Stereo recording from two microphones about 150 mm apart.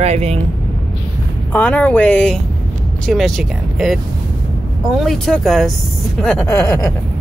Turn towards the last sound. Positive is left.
turn(degrees=15)  # may be behind; listen again after turning